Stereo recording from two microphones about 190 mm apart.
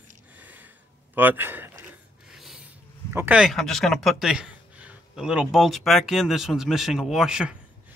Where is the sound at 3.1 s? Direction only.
5° right (ahead or behind).